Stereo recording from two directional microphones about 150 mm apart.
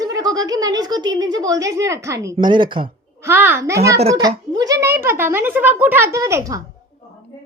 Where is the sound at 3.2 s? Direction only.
15° right (ahead or behind).